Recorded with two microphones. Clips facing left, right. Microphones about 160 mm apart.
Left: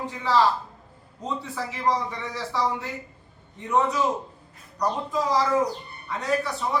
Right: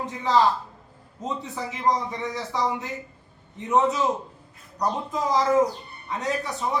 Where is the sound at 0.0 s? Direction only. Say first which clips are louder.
Right 1 dB; 20° right (ahead or behind).